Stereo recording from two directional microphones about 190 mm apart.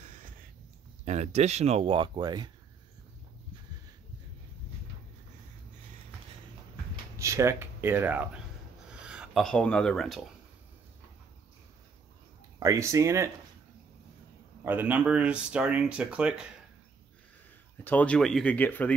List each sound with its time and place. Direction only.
0.0 s a sound: 40° right (ahead or behind)
1.0 s speech: 35° right (ahead or behind)
7.2 s speech: 15° right (ahead or behind); by 10.2 s centre (ahead or behind)
12.5 s speech: 15° right (ahead or behind)
14.6 s speech: 10° right (ahead or behind)
17.8 s speech: 10° left (ahead or behind)